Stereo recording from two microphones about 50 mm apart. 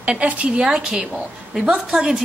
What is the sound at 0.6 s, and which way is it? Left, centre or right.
Speech, centre.